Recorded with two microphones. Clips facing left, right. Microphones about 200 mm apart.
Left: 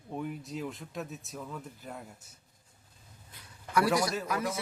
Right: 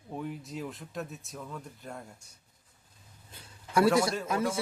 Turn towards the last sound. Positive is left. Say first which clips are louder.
# right 3 dB
turn(degrees=-25)  # may be behind; listen again after turning